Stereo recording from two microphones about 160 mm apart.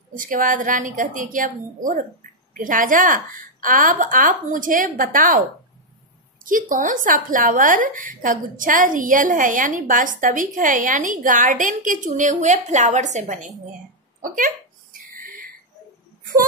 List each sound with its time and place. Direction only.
0.1 s a woman's voice: 55° right (ahead or behind)
6.4 s a woman's voice: 60° right (ahead or behind)
15.1 s a sound: 60° right (ahead or behind)